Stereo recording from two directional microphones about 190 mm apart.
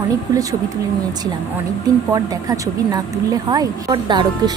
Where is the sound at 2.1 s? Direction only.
20° right (ahead or behind).